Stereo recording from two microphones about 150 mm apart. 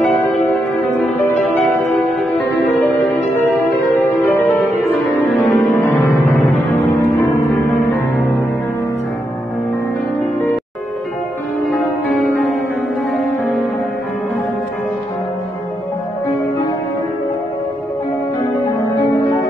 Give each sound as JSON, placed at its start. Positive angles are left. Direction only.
{"t": 2.3, "sound": "music", "side_deg": 10}
{"t": 5.2, "sound": "music", "side_deg": 10}
{"t": 18.9, "sound": "music", "side_deg": 20}